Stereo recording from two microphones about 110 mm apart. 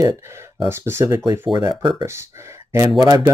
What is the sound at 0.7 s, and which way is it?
Speech, 20° right (ahead or behind).